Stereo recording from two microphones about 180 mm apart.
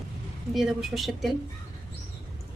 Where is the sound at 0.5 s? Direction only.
Centre (ahead or behind).